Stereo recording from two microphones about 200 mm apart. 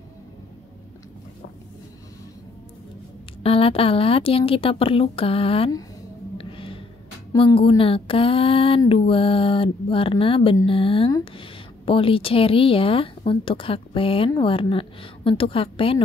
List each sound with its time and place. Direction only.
3.4 s speech: 30° left (ahead or behind)
6.3 s music: 25° left (ahead or behind)
7.3 s speech: 25° left (ahead or behind)